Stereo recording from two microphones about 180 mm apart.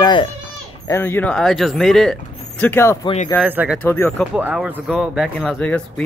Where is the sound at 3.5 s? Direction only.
10° right (ahead or behind).